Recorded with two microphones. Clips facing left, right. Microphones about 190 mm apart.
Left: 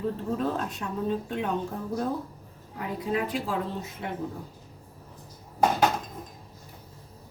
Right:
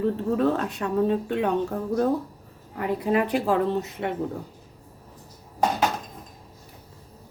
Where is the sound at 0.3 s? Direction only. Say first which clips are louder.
Right 6 dB; 70° right (ahead or behind).